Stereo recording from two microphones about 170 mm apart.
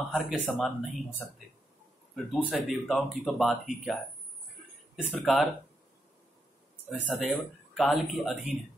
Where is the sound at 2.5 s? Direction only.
Centre (ahead or behind).